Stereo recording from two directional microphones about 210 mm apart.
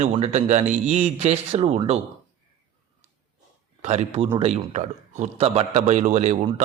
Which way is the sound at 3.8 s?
30° right (ahead or behind).